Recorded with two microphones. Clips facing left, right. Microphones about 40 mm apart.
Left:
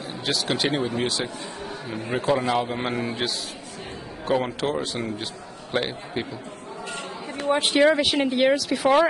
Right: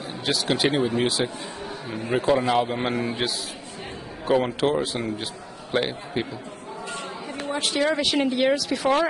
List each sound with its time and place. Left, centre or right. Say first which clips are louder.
0.3 s speech: right 2 dB; centre
7.6 s speech: left 5 dB; left
7.9 s speech: left 1 dB; centre